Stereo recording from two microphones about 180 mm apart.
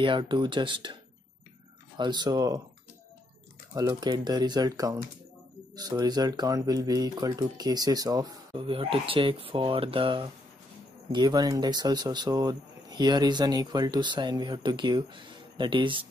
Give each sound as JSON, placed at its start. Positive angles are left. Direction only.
{"t": 0.0, "sound": "speech", "side_deg": -25}
{"t": 2.0, "sound": "speech", "side_deg": -25}
{"t": 3.7, "sound": "speech", "side_deg": -20}